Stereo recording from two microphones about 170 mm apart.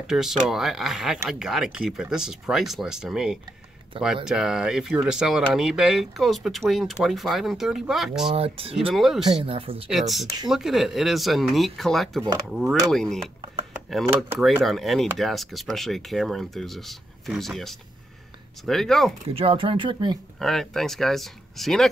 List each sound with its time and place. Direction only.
0.0 s speech: 5° right (ahead or behind)
8.4 s speech: 35° right (ahead or behind)
8.9 s speech: centre (ahead or behind)
9.4 s speech: 35° right (ahead or behind)
9.8 s speech: centre (ahead or behind)
13.7 s a sound: centre (ahead or behind)
14.0 s speech: 10° right (ahead or behind)
14.4 s speech: centre (ahead or behind)
19.3 s speech: 30° right (ahead or behind)
20.3 s speech: 5° left (ahead or behind)